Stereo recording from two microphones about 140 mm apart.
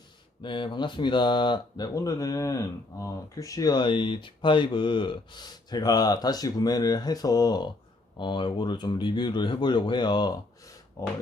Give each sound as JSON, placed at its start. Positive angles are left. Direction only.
{"t": 0.4, "sound": "speech", "side_deg": 35}
{"t": 11.0, "sound": "speech", "side_deg": 20}